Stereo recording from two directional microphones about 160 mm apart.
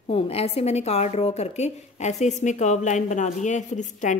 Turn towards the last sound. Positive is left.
turn(degrees=50)  # may be behind; listen again after turning